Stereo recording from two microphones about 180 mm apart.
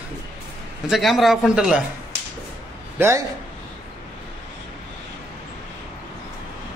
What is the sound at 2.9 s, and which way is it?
Speech, 15° right (ahead or behind).